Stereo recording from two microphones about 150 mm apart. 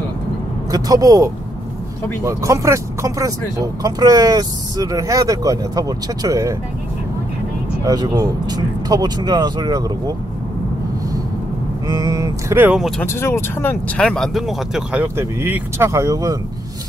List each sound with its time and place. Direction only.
0.7 s speech: 25° right (ahead or behind)
7.8 s speech: 25° right (ahead or behind)
11.9 s speech: 25° right (ahead or behind)
12.7 s speech: centre (ahead or behind)
13.0 s speech: 15° left (ahead or behind)
14.0 s speech: 5° left (ahead or behind); by 16.3 s 20° right (ahead or behind)